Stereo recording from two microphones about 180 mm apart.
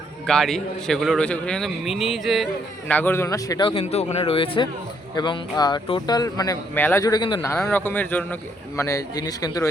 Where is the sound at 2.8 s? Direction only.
10° left (ahead or behind).